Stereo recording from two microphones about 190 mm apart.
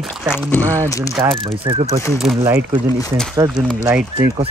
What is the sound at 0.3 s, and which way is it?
Speech, 10° left (ahead or behind).